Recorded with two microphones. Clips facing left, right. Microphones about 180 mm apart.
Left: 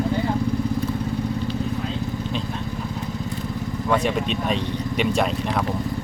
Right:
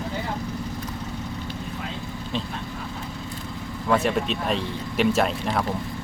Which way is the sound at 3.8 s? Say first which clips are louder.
Even; centre (ahead or behind).